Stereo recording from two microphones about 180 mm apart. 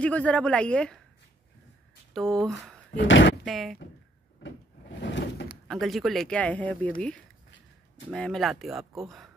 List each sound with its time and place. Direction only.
0.0 s a woman's voice: 5° left (ahead or behind)
2.3 s speech: centre (ahead or behind)
3.0 s speech: 90° left
3.4 s speech: centre (ahead or behind)
4.4 s sliding door: 80° left
5.7 s speech: centre (ahead or behind)